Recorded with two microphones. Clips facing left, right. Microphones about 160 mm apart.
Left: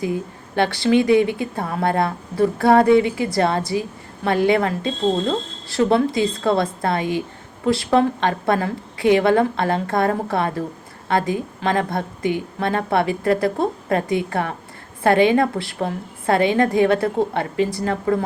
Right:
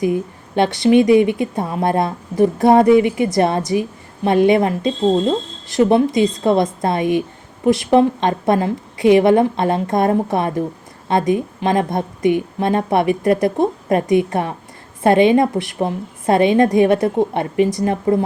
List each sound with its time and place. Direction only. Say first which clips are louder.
0.0 s a woman's voice: right 5 dB; 20° right (ahead or behind)